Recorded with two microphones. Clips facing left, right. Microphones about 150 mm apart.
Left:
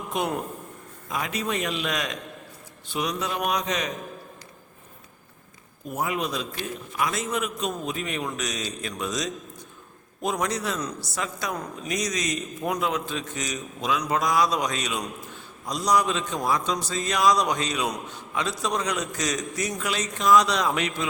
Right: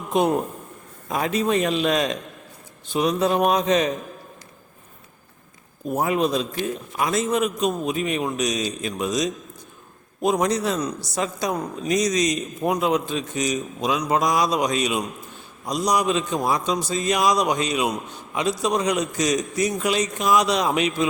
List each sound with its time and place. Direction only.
0.1 s a man's voice: 25° right (ahead or behind)
5.9 s a man's voice: 35° right (ahead or behind); by 9.3 s 15° right (ahead or behind)
10.3 s a man's voice: 25° right (ahead or behind)